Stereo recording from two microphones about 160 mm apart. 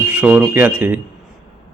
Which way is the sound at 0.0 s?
10° right (ahead or behind).